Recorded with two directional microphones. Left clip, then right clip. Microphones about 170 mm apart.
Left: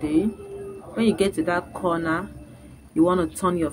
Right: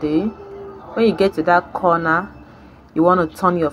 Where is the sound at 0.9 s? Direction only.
5° right (ahead or behind).